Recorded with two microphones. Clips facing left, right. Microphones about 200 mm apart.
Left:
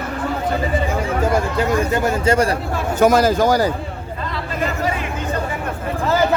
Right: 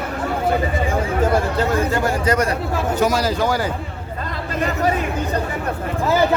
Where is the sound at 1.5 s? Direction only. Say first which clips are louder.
Left 1 dB; 20° left (ahead or behind).